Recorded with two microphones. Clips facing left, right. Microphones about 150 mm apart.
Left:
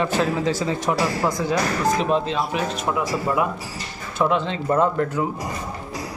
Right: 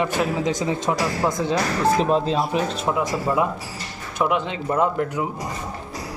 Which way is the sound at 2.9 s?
20° right (ahead or behind).